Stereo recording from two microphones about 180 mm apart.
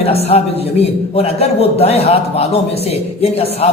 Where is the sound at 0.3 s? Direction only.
35° left (ahead or behind).